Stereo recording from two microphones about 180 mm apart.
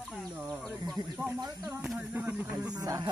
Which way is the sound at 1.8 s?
5° right (ahead or behind).